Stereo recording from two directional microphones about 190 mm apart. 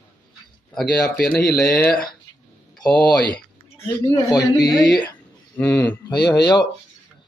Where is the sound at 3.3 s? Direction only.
15° left (ahead or behind).